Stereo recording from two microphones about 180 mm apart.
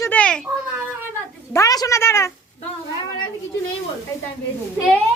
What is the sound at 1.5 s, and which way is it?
Speech, 20° left (ahead or behind).